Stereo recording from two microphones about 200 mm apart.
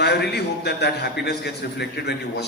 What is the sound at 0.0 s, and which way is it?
A man's voice, 55° left (ahead or behind).